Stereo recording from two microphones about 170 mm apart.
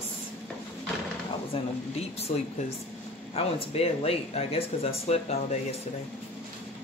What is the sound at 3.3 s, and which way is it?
Speech, 35° left (ahead or behind).